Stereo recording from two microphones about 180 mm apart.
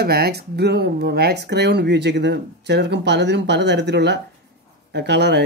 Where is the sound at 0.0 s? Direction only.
60° right (ahead or behind).